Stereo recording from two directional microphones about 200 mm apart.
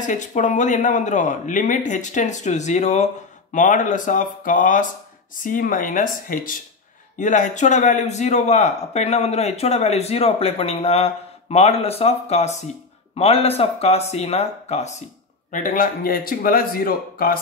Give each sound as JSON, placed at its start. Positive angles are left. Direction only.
{"t": 0.0, "sound": "a man's voice", "side_deg": 40}